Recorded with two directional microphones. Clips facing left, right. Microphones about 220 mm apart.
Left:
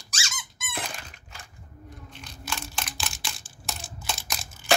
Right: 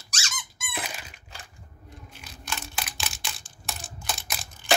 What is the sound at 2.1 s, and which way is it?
Camera, 5° right (ahead or behind).